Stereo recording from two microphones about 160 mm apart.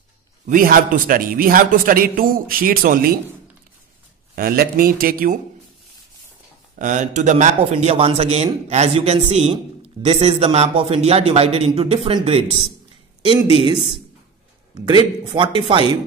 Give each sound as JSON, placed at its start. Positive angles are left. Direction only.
{"t": 0.5, "sound": "speech", "side_deg": -60}
{"t": 4.4, "sound": "speech", "side_deg": -70}
{"t": 6.8, "sound": "a man's voice", "side_deg": -50}
{"t": 14.9, "sound": "speech", "side_deg": -30}